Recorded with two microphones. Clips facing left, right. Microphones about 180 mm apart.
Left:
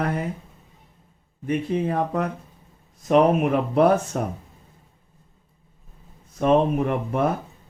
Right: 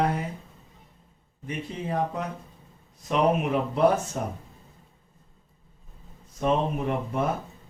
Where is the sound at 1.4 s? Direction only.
60° left (ahead or behind).